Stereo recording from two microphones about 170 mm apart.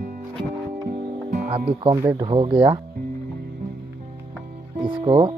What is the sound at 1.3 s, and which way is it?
Speech, 40° right (ahead or behind).